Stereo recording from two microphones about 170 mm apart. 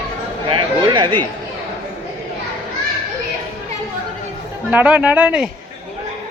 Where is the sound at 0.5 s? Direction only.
30° right (ahead or behind).